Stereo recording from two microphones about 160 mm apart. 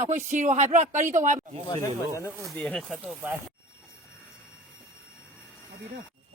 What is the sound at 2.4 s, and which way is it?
Speech, 5° left (ahead or behind).